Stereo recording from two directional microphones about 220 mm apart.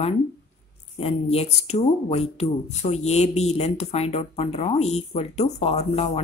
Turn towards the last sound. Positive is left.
turn(degrees=30)  # may be behind; listen again after turning